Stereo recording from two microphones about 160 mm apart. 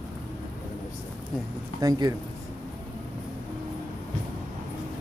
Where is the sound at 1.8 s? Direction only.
25° right (ahead or behind).